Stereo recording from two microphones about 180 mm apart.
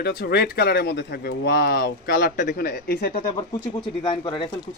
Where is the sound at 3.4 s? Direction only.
25° left (ahead or behind).